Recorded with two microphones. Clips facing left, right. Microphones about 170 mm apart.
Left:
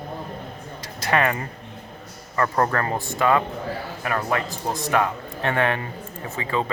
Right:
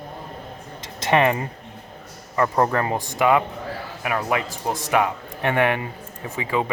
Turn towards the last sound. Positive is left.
turn(degrees=-15)  # may be behind; listen again after turning